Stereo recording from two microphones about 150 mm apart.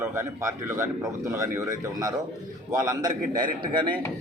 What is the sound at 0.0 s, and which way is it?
Speech, 20° right (ahead or behind).